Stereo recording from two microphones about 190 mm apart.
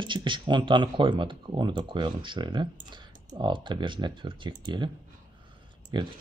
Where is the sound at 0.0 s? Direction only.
25° right (ahead or behind).